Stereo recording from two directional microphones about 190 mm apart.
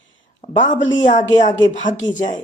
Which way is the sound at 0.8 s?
80° left.